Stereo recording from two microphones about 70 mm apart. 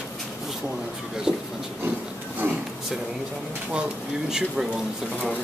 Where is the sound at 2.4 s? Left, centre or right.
Right.